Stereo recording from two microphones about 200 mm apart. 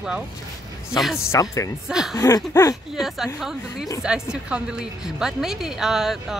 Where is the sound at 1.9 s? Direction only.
5° right (ahead or behind).